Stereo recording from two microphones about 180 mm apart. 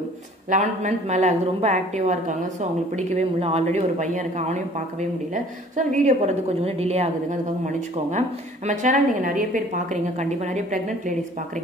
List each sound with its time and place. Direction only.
0.5 s a woman's voice: 40° right (ahead or behind)
6.0 s a woman's voice: 35° right (ahead or behind)